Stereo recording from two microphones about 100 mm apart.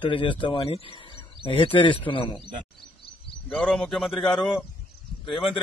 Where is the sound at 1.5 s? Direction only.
60° left (ahead or behind).